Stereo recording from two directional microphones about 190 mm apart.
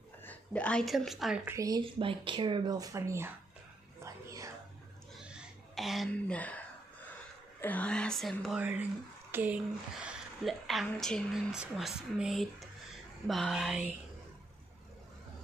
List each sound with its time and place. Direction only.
0.2 s a woman's voice: 10° left (ahead or behind); by 3.3 s 15° right (ahead or behind)
4.0 s whispering: 15° right (ahead or behind)
5.1 s a sound: 5° right (ahead or behind)
7.6 s a woman's voice: 10° left (ahead or behind)